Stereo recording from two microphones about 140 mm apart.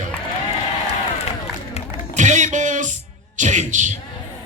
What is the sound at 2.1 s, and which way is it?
Music, 60° right (ahead or behind).